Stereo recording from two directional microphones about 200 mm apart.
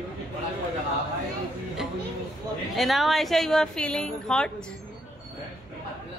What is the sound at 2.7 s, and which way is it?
A woman's voice, centre (ahead or behind).